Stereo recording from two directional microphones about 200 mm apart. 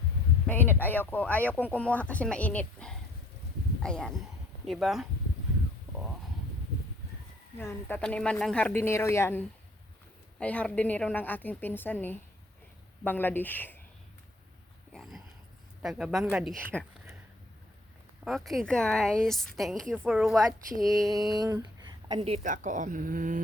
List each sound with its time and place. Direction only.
0.4 s a woman's voice: 10° left (ahead or behind)
7.6 s speech: 10° left (ahead or behind)
14.9 s a sound: centre (ahead or behind)
15.8 s a woman's voice: centre (ahead or behind)
18.3 s a woman's voice: centre (ahead or behind)
21.3 s speech: 20° right (ahead or behind); by 23.4 s 40° right (ahead or behind)